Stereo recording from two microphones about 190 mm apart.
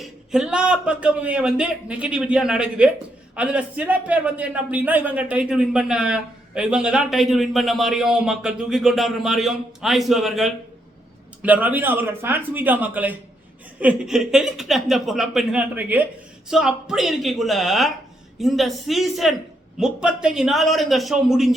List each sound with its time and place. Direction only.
0.0 s a man's voice: 5° right (ahead or behind)